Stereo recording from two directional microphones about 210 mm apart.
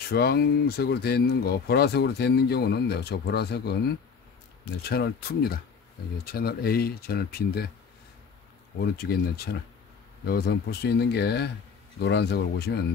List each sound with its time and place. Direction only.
0.1 s speech: 50° left (ahead or behind)
8.8 s speech: 50° left (ahead or behind)